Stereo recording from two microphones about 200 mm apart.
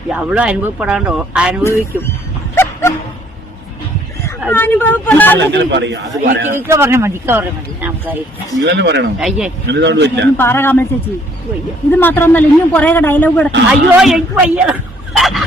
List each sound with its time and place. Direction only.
0.1 s speech: 5° right (ahead or behind)
4.5 s a man's voice: 10° left (ahead or behind)
5.4 s a man's voice: 60° right (ahead or behind)
6.7 s speech: 15° right (ahead or behind)
8.6 s a man's voice: 60° right (ahead or behind)
9.1 s speech: 5° right (ahead or behind)
9.6 s a man's voice: 60° right (ahead or behind)
10.3 s a man's voice: 10° left (ahead or behind)
11.9 s a man's voice: 10° left (ahead or behind)
13.7 s speech: 5° right (ahead or behind)